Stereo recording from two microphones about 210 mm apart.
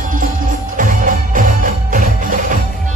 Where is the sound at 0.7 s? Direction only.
40° right (ahead or behind).